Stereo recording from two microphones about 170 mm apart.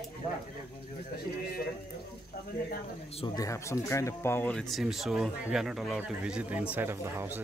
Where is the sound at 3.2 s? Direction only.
20° left (ahead or behind).